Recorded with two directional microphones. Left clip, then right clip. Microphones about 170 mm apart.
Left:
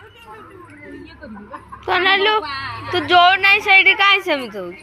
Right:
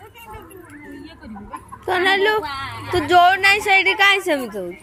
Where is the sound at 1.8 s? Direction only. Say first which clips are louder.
Left 2 dB; 30° right (ahead or behind).